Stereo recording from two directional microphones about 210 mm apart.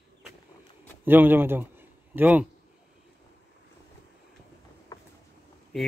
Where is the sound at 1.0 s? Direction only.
10° right (ahead or behind).